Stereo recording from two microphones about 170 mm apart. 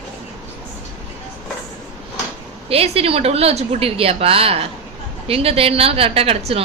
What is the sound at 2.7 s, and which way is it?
A woman's voice, 35° right (ahead or behind).